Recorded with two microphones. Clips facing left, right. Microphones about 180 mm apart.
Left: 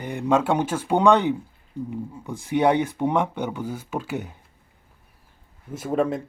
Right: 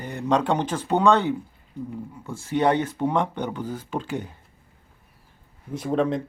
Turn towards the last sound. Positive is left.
turn(degrees=5)  # may be behind; listen again after turning